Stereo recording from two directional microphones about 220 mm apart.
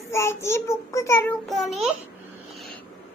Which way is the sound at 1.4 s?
Centre (ahead or behind).